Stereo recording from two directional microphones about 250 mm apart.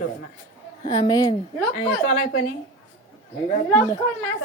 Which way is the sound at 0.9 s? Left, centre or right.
Centre.